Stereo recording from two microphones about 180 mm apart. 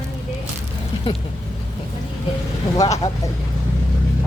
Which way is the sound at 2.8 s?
20° left (ahead or behind).